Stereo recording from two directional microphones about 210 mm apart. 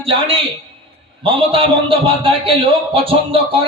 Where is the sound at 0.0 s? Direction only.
25° right (ahead or behind).